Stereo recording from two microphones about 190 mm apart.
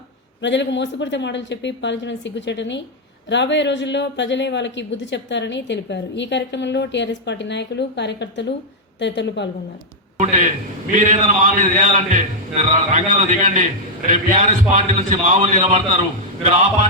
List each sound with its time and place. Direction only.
0.4 s speech: 70° left (ahead or behind)
10.9 s a man's voice: 40° right (ahead or behind)